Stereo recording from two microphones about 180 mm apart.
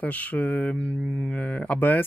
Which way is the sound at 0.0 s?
10° left (ahead or behind).